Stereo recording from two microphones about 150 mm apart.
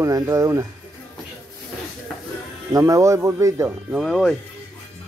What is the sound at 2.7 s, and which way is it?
Speech, 20° right (ahead or behind).